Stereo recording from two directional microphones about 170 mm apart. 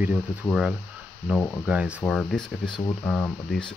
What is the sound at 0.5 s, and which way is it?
Speech, 5° right (ahead or behind).